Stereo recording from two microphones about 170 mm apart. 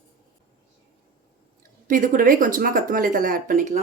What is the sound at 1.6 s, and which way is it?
Speech, 50° right (ahead or behind).